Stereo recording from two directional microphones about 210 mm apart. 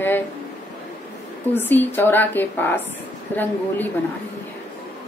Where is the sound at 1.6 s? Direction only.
10° left (ahead or behind).